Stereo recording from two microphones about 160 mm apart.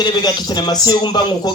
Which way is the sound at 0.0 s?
25° left (ahead or behind).